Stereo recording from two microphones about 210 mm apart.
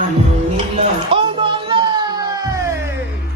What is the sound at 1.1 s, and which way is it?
Music, 25° right (ahead or behind).